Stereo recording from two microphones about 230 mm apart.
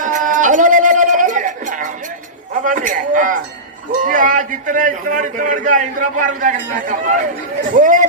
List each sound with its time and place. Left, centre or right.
0.0 s music: right
2.6 s a man's voice: right